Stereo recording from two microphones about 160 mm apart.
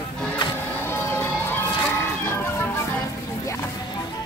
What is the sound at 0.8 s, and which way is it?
Music, 15° left (ahead or behind).